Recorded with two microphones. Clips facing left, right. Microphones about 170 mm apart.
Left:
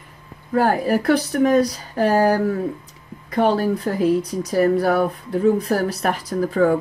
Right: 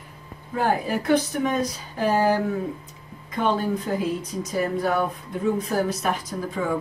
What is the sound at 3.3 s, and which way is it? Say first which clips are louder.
Speech: left 5 dB; 70° left (ahead or behind).